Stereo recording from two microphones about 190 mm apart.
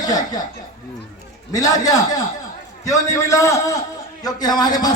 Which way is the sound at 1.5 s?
20° left (ahead or behind).